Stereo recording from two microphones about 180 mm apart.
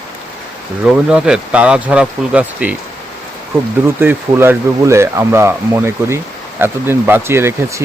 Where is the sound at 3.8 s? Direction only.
15° right (ahead or behind).